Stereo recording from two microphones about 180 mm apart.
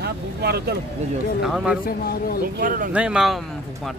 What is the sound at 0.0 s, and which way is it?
Speech, 65° right (ahead or behind).